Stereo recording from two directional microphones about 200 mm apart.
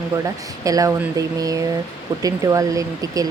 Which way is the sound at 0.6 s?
15° right (ahead or behind).